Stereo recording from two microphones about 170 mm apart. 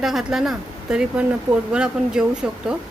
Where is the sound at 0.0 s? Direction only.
Centre (ahead or behind).